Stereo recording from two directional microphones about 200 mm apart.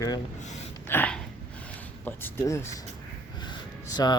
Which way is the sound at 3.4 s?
20° left (ahead or behind).